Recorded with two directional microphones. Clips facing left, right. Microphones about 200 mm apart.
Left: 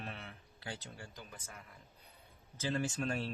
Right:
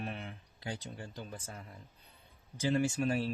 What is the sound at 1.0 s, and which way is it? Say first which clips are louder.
Speech: right 7 dB; 30° right (ahead or behind).